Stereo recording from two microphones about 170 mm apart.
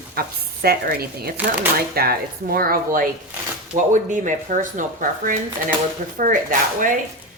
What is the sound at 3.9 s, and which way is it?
A woman's voice, 50° right (ahead or behind).